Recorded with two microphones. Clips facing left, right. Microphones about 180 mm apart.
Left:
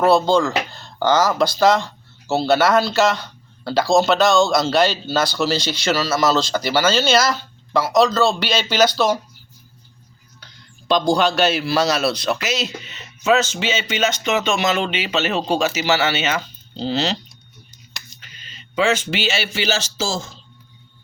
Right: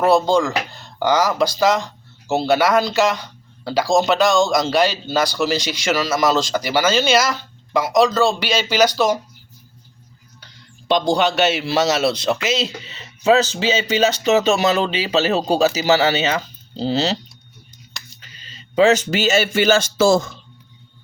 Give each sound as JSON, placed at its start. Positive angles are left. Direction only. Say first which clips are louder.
{"t": 0.0, "sound": "speech", "louder": "even", "side_deg": -15}
{"t": 10.8, "sound": "a man's voice", "louder": "even", "side_deg": -20}
{"t": 18.2, "sound": "speech", "louder": "right 1 dB", "side_deg": -35}